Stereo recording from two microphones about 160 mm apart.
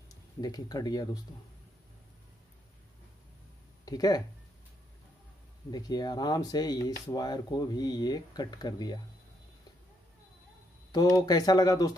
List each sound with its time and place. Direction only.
0.4 s speech: 25° left (ahead or behind)
3.8 s speech: 25° left (ahead or behind)
5.7 s speech: 25° left (ahead or behind)
10.9 s speech: 25° left (ahead or behind)